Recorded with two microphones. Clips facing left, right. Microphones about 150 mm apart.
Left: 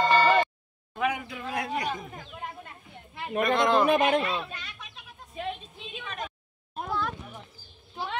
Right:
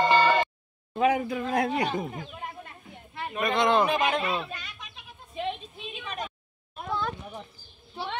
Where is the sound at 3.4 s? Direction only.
Centre (ahead or behind).